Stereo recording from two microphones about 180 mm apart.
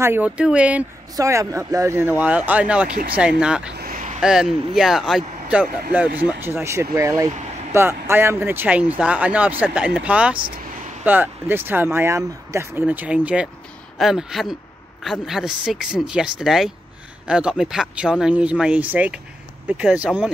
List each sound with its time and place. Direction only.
0.0 s speech: 10° right (ahead or behind)
1.1 s speech: 20° right (ahead or behind)
3.7 s a sound: 50° right (ahead or behind)
4.2 s speech: 5° right (ahead or behind)